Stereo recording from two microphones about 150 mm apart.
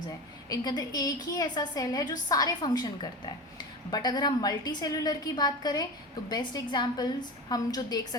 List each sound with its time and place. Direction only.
0.4 s a woman's voice: 25° left (ahead or behind)